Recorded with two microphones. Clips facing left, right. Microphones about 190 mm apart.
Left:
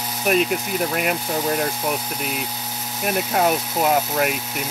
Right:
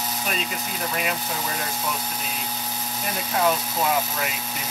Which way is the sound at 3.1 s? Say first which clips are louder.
Left 4 dB; 55° left (ahead or behind).